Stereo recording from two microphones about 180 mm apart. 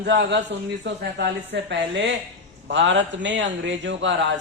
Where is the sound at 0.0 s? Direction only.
75° right (ahead or behind).